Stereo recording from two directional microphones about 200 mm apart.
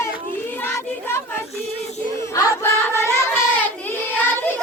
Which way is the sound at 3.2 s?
10° left (ahead or behind).